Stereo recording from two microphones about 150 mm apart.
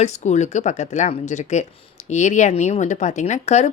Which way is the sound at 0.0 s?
50° left (ahead or behind).